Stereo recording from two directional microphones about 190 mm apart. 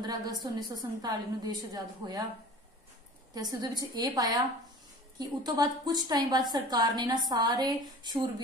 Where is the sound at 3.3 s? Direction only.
20° right (ahead or behind).